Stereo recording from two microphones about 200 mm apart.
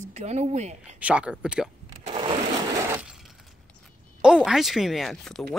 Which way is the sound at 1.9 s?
30° right (ahead or behind).